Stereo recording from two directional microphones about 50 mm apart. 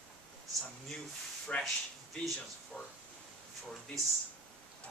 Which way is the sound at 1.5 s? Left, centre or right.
Left.